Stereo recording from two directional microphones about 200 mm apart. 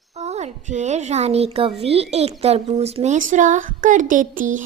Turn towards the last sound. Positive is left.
turn(degrees=-40)  # may be behind; listen again after turning